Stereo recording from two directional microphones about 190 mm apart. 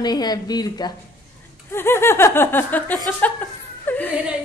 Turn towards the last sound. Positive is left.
turn(degrees=10)  # may be behind; listen again after turning